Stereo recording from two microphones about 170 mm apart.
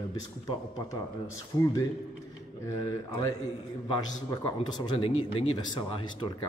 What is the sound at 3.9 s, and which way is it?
Speech, 25° left (ahead or behind).